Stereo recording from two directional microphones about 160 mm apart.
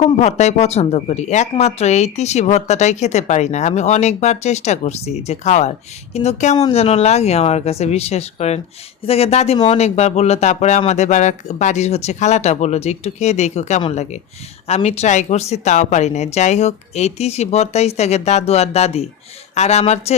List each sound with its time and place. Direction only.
0.0 s speech: 40° left (ahead or behind)